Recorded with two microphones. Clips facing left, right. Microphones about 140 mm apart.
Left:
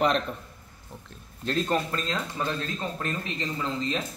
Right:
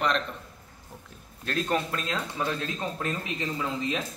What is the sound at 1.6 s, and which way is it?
Speech, centre (ahead or behind).